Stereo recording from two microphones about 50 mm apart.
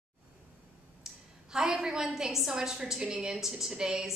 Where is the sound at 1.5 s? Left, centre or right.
Centre.